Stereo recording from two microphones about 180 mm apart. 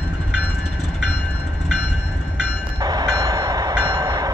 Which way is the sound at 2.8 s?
20° right (ahead or behind).